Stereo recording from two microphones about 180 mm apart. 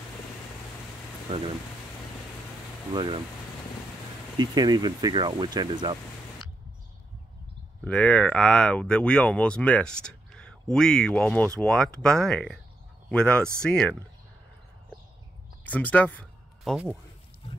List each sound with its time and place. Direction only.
2.9 s speech: 25° right (ahead or behind)
4.4 s speech: 25° right (ahead or behind)
7.8 s speech: 5° left (ahead or behind)
15.6 s speech: 10° left (ahead or behind)